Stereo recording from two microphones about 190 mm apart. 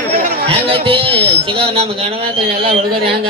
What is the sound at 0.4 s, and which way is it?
Speech, 30° right (ahead or behind).